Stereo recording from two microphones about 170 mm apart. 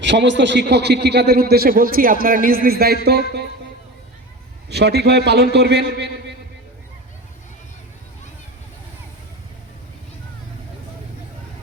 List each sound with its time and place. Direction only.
0.0 s a man's voice: 90° right; by 3.4 s 70° right (ahead or behind)
4.7 s a man's voice: 75° right (ahead or behind)